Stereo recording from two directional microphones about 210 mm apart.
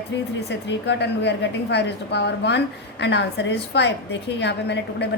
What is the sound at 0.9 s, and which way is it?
A woman's voice, 55° left (ahead or behind).